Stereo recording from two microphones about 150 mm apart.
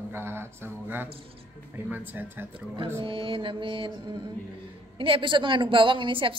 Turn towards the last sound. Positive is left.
turn(degrees=-35)  # may be behind; listen again after turning